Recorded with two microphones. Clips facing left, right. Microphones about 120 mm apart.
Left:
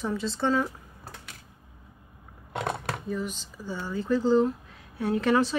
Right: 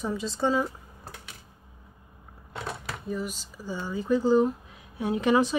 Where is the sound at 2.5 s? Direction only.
60° left (ahead or behind).